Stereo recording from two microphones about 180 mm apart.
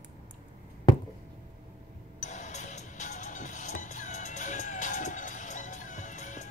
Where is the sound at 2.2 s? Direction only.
40° left (ahead or behind).